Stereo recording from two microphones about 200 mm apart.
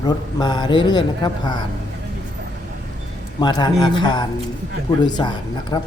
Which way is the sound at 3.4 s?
20° left (ahead or behind).